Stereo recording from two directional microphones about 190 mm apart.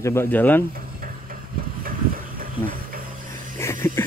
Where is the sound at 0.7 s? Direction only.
50° right (ahead or behind).